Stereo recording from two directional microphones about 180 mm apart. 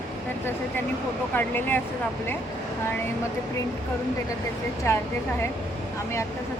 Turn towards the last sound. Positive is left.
turn(degrees=15)  # may be behind; listen again after turning